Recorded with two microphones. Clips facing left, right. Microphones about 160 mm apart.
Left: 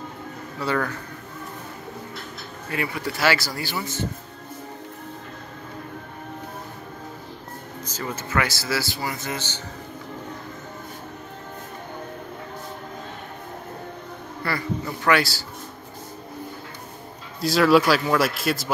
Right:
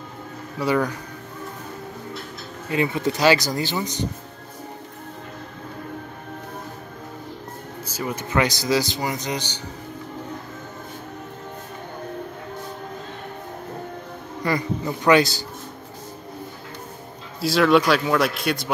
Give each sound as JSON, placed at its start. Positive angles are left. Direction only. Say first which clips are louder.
{"t": 0.6, "sound": "speech", "louder": "right 4 dB", "side_deg": -15}
{"t": 2.7, "sound": "speech", "louder": "right 6 dB", "side_deg": -20}
{"t": 7.8, "sound": "speech", "louder": "right 3 dB", "side_deg": -10}
{"t": 14.4, "sound": "speech", "louder": "right 4 dB", "side_deg": -20}
{"t": 17.4, "sound": "a man's voice", "louder": "even", "side_deg": 0}